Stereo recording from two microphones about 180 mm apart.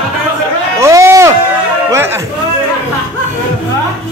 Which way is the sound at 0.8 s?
15° right (ahead or behind).